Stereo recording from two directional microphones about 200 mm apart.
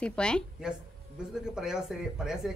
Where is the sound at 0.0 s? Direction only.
5° left (ahead or behind).